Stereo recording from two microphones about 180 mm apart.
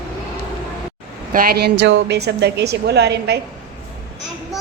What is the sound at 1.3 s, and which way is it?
Speech, 55° right (ahead or behind).